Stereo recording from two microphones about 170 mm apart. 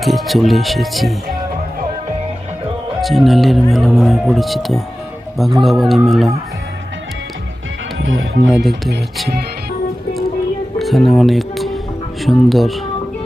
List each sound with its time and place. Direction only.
0.0 s speech: centre (ahead or behind)
3.0 s speech: centre (ahead or behind)
7.9 s speech: 90° right
8.4 s speech: centre (ahead or behind)
10.8 s music: centre (ahead or behind)
12.2 s speech: centre (ahead or behind)